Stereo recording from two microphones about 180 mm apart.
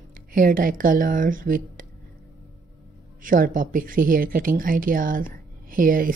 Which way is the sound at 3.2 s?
50° right (ahead or behind).